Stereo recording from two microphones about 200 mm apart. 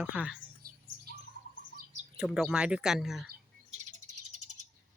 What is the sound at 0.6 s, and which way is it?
Bird, 45° right (ahead or behind).